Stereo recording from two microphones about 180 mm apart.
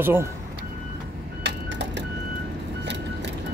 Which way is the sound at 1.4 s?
75° right (ahead or behind).